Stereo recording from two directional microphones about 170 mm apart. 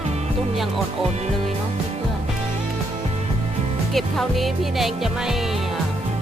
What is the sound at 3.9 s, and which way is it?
Music, centre (ahead or behind).